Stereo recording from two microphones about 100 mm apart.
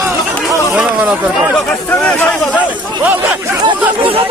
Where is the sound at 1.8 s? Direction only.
15° left (ahead or behind).